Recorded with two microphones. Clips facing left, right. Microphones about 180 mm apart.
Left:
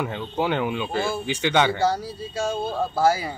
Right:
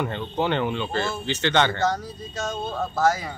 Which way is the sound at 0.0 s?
5° left (ahead or behind).